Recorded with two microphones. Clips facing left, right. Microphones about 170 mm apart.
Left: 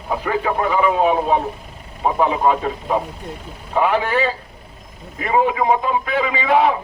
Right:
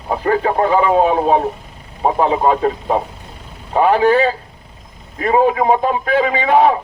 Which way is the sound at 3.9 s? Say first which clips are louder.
Right 7 dB; 35° right (ahead or behind).